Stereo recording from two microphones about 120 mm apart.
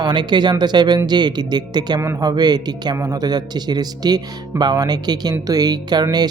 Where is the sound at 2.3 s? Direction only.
35° right (ahead or behind).